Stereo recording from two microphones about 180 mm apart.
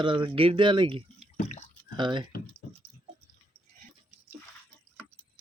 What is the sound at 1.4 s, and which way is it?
Drip, 40° left (ahead or behind).